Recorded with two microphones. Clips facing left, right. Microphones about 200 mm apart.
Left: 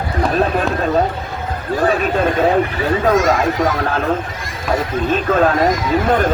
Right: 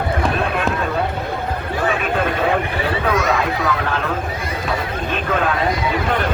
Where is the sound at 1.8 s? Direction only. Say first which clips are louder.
Left 5 dB; 40° left (ahead or behind).